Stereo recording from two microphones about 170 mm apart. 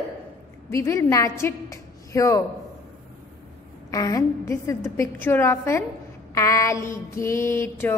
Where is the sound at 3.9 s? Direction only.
20° left (ahead or behind).